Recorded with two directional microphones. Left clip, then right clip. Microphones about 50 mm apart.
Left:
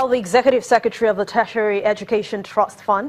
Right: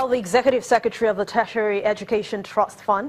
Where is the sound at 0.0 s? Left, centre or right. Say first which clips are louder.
Left 3 dB; left.